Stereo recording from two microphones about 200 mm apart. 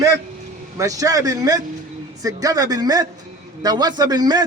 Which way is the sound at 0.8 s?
15° right (ahead or behind).